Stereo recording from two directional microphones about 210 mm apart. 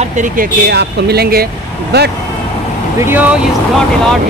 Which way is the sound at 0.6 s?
50° right (ahead or behind).